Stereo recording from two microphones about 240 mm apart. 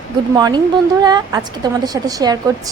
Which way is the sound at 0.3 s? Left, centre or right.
Centre.